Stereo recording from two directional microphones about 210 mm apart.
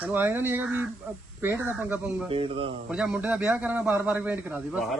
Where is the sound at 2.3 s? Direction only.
25° right (ahead or behind).